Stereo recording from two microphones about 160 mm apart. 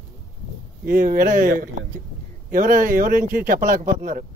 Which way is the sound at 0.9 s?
55° right (ahead or behind).